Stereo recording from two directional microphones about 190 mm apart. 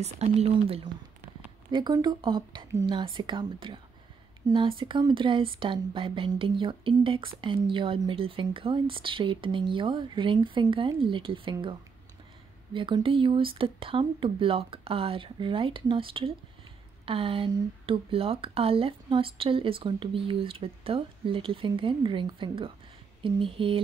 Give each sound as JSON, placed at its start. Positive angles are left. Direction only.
{"t": 0.0, "sound": "speech", "side_deg": -35}
{"t": 12.7, "sound": "speech", "side_deg": -25}